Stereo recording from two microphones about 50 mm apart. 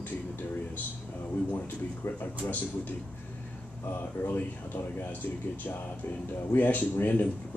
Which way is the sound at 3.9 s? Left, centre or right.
Left.